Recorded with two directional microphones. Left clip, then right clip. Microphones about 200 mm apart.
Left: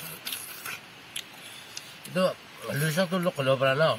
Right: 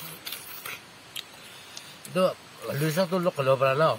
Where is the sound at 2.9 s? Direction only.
20° right (ahead or behind).